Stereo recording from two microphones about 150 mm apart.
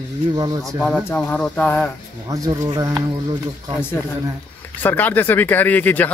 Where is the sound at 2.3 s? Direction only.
25° right (ahead or behind).